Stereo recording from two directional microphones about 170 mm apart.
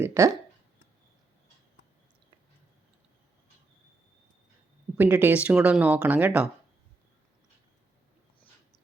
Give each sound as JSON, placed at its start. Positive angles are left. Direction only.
{"t": 0.0, "sound": "speech", "side_deg": -15}
{"t": 4.9, "sound": "speech", "side_deg": -10}